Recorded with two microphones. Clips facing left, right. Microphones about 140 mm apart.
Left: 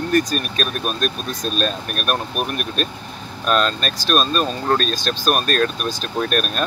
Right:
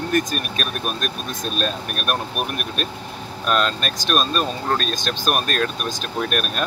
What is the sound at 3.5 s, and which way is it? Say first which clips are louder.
Speech: left 2 dB; 15° right (ahead or behind).